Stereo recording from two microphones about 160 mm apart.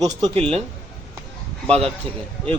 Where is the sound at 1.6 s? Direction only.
5° left (ahead or behind).